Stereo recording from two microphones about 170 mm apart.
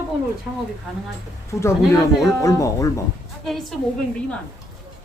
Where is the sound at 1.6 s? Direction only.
15° left (ahead or behind).